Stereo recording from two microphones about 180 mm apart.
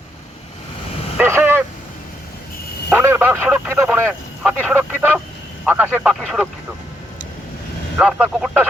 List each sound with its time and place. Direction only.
1.2 s vehicle: 10° right (ahead or behind)
2.9 s speech: 10° right (ahead or behind)
7.9 s speech: 5° right (ahead or behind)